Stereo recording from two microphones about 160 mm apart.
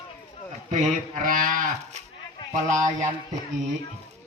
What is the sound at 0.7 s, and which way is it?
Speech, 50° right (ahead or behind).